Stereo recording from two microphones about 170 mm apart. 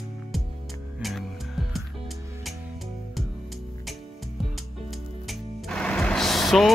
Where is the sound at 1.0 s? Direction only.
Centre (ahead or behind).